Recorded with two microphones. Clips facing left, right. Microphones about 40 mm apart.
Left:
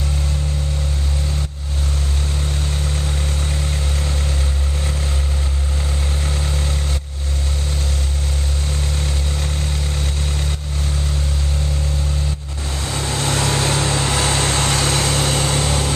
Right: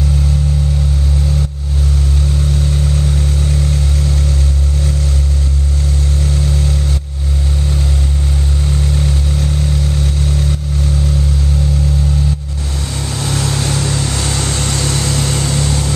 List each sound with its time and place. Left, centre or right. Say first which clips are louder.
3.0 s vehicle: right 6 dB; centre
6.2 s vehicle: right 6 dB; centre
8.9 s vehicle: right 6 dB; centre
13.1 s vehicle: even; left